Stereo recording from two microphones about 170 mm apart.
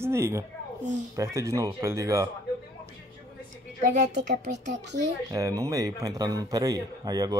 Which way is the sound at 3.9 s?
45° right (ahead or behind).